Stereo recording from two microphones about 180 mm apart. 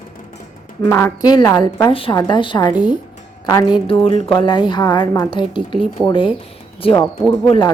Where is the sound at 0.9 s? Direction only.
10° left (ahead or behind).